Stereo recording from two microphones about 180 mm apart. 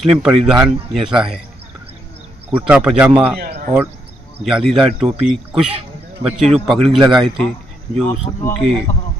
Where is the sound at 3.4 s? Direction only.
50° right (ahead or behind).